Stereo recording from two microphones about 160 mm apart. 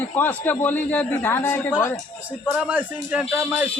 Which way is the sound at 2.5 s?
5° right (ahead or behind).